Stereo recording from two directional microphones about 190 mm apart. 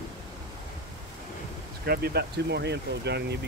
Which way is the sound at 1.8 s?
55° right (ahead or behind).